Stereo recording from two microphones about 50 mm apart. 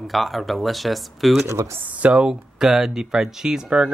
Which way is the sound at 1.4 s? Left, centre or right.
Right.